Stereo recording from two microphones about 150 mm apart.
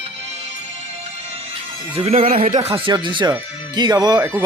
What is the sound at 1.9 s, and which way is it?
Speech, 40° right (ahead or behind).